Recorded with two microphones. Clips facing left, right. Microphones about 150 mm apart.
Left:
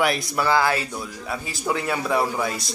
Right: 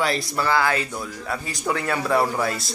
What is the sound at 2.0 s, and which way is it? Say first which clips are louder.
Speech: right 3 dB; centre (ahead or behind).